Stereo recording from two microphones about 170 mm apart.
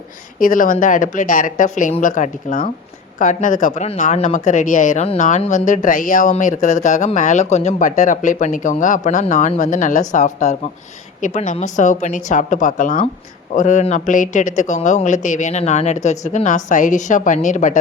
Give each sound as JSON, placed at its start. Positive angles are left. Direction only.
{"t": 0.3, "sound": "speech", "side_deg": 55}